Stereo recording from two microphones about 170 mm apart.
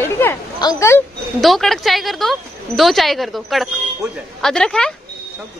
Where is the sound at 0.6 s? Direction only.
20° left (ahead or behind).